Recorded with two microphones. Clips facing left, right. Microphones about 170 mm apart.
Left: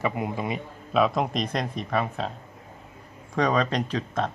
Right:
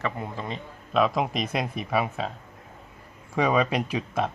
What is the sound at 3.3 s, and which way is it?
Speech, 10° right (ahead or behind).